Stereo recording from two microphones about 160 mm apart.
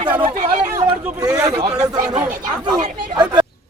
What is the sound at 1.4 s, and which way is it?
Speech, 25° right (ahead or behind).